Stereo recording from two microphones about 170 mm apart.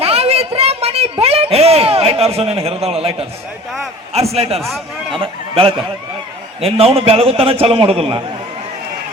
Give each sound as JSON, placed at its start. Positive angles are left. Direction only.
{"t": 0.0, "sound": "a sound", "side_deg": -35}
{"t": 4.1, "sound": "a man's voice", "side_deg": -35}
{"t": 4.6, "sound": "a man's voice", "side_deg": 0}
{"t": 5.2, "sound": "a man's voice", "side_deg": -30}